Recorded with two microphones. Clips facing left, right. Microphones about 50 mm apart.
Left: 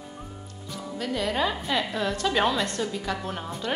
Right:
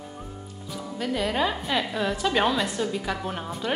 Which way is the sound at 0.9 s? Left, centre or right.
Centre.